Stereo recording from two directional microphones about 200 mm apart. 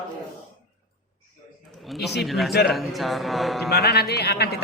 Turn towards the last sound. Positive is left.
turn(degrees=50)  # may be behind; listen again after turning